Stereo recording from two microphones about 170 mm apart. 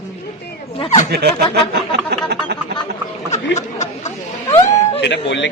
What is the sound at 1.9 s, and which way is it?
Music, 70° right (ahead or behind).